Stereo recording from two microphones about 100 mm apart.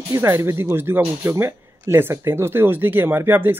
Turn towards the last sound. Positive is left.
turn(degrees=-20)  # may be behind; listen again after turning